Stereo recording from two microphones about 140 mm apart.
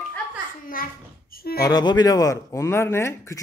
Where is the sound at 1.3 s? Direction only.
90° left.